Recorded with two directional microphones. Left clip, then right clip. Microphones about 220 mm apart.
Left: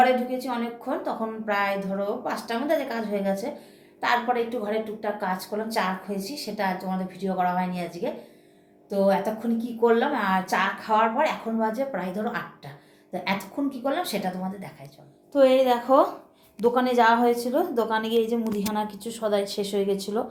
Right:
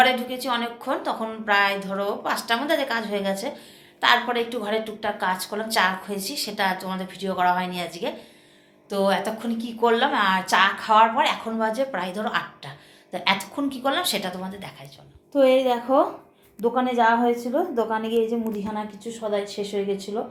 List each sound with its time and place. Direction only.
0.0 s a woman's voice: centre (ahead or behind)